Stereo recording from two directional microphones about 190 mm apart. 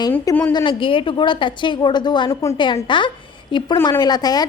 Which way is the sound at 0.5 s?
25° left (ahead or behind).